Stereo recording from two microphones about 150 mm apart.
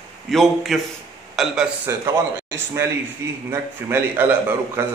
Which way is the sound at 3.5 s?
15° right (ahead or behind).